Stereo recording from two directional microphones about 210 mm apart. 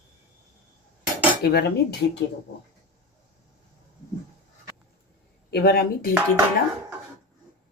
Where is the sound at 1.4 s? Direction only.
50° left (ahead or behind).